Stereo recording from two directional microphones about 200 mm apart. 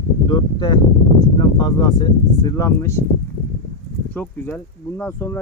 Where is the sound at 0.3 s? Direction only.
20° left (ahead or behind).